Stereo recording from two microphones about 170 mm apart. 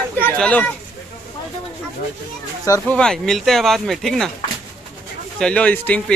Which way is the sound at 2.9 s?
5° left (ahead or behind).